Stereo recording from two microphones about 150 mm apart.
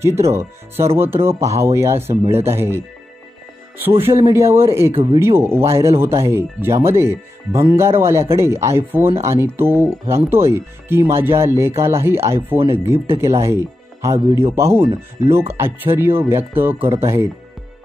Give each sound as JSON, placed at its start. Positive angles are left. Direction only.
{"t": 0.0, "sound": "speech", "side_deg": -20}
{"t": 4.0, "sound": "speech", "side_deg": -15}
{"t": 4.9, "sound": "speech", "side_deg": -35}
{"t": 5.2, "sound": "speech", "side_deg": -15}